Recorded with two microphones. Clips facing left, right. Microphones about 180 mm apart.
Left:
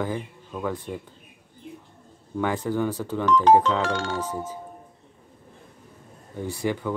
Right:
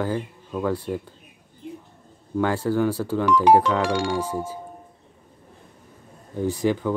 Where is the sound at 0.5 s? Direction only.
10° right (ahead or behind).